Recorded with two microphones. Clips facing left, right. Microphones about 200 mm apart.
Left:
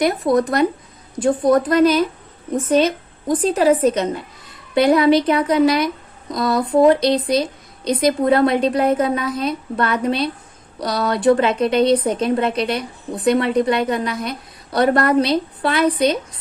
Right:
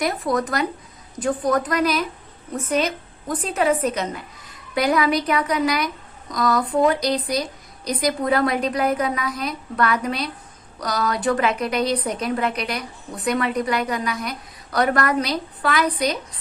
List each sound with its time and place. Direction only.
0.0 s a woman's voice: 25° left (ahead or behind)